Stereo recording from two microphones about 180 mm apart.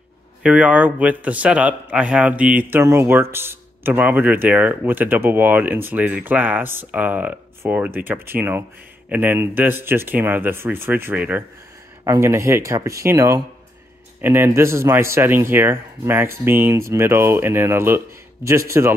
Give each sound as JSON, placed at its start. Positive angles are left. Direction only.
{"t": 0.4, "sound": "speech", "side_deg": -5}